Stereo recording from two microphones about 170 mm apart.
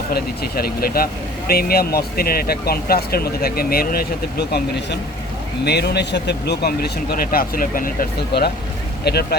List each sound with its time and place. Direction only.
0.1 s a man's voice: 60° left (ahead or behind)